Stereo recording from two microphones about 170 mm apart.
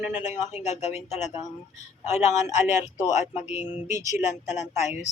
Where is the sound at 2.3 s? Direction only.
45° left (ahead or behind).